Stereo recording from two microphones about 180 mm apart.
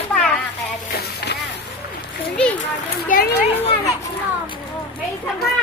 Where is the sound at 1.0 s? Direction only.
65° left (ahead or behind).